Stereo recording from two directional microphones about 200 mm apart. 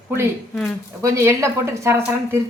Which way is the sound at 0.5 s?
Centre (ahead or behind).